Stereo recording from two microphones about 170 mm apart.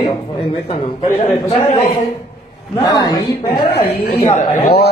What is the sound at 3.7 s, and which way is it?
Speech, 65° left (ahead or behind).